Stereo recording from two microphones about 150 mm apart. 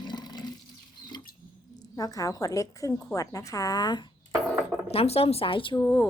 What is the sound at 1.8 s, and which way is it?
A woman's voice, 25° left (ahead or behind).